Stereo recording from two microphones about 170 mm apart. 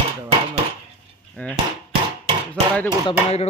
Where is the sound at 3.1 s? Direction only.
35° left (ahead or behind).